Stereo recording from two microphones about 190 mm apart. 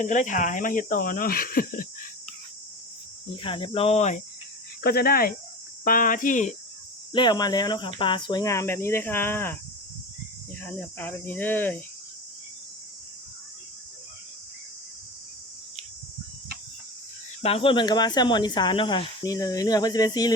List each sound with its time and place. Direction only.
0.0 s speech: 40° left (ahead or behind)
3.4 s speech: 25° left (ahead or behind)
4.8 s speech: 55° left (ahead or behind)
7.1 s speech: 25° left (ahead or behind)
10.6 s speech: 10° left (ahead or behind)
17.4 s speech: 30° left (ahead or behind)